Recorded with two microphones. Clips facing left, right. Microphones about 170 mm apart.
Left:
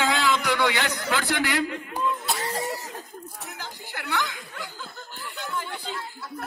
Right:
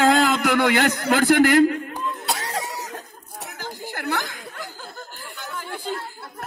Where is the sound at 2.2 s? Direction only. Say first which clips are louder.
Right 1 dB; 70° right (ahead or behind).